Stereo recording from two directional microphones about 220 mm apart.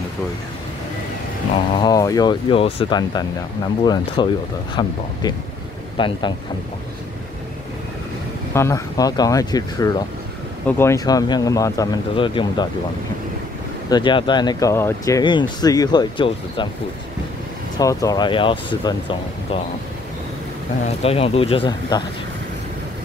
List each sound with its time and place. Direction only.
1.8 s speech: 15° left (ahead or behind)
8.5 s speech: 15° left (ahead or behind)
13.8 s speech: 20° left (ahead or behind)
17.7 s speech: 15° left (ahead or behind)
20.8 s speech: 25° left (ahead or behind)